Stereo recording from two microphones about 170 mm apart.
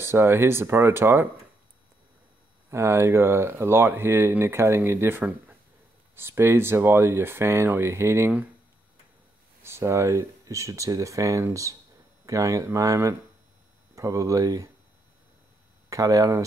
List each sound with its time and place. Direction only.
0.0 s speech: 15° right (ahead or behind)
2.7 s speech: 15° right (ahead or behind)
9.6 s speech: 15° right (ahead or behind)
15.9 s speech: 20° right (ahead or behind)